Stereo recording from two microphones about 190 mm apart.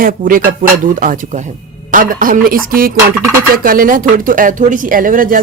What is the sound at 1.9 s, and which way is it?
Speech, 45° right (ahead or behind).